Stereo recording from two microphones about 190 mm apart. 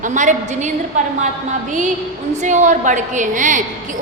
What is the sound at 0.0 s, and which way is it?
A woman's voice, 40° right (ahead or behind).